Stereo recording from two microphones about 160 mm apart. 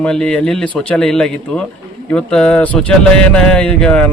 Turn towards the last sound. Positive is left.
turn(degrees=5)  # may be behind; listen again after turning